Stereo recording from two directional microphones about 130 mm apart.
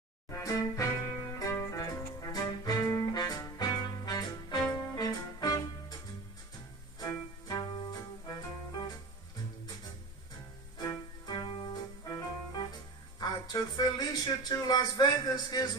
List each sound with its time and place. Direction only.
0.3 s music: 25° left (ahead or behind)
7.0 s music: 30° left (ahead or behind)
10.8 s music: 30° left (ahead or behind)
13.2 s a sound: 30° left (ahead or behind)